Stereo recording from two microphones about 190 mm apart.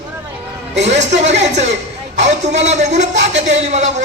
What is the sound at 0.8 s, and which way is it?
Speech, 35° right (ahead or behind).